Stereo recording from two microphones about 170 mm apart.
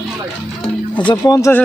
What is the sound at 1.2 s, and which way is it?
Speech, 20° left (ahead or behind).